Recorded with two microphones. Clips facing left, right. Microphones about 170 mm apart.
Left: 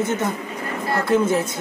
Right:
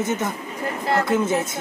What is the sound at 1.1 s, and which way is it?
Speech, 20° right (ahead or behind).